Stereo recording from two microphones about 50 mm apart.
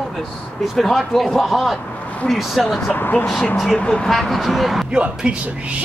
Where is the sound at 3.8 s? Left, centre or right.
Centre.